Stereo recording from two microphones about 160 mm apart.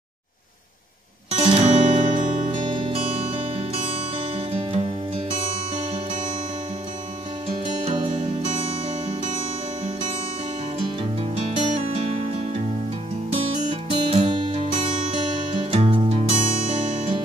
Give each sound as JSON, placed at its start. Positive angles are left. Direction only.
{"t": 1.3, "sound": "music", "side_deg": -40}
{"t": 2.5, "sound": "music", "side_deg": -30}
{"t": 8.5, "sound": "music", "side_deg": -40}
{"t": 11.0, "sound": "music", "side_deg": -35}
{"t": 13.8, "sound": "music", "side_deg": -35}